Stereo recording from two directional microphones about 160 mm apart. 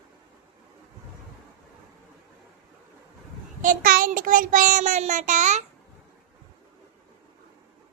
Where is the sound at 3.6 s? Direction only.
60° right (ahead or behind).